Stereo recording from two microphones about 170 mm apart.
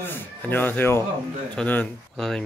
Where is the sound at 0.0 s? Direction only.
10° left (ahead or behind).